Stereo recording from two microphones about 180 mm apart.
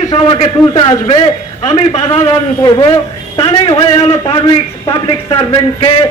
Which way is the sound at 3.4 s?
30° left (ahead or behind).